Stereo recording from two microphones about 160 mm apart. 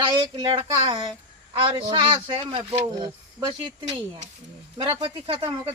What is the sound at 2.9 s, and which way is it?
Speech, 25° right (ahead or behind).